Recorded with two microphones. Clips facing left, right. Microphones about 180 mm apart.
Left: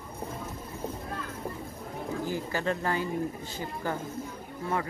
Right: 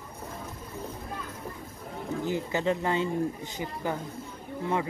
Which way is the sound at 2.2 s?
20° right (ahead or behind).